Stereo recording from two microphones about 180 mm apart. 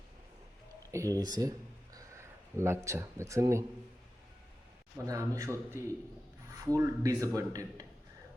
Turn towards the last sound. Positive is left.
turn(degrees=-20)  # may be behind; listen again after turning